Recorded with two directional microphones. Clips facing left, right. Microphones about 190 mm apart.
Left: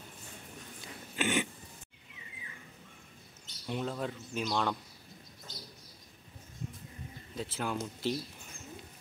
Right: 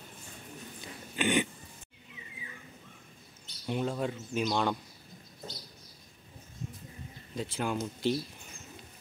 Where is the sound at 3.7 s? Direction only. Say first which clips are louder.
Right 3 dB; 5° right (ahead or behind).